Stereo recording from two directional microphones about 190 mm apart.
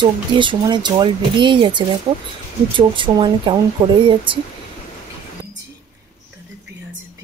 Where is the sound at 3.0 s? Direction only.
25° right (ahead or behind).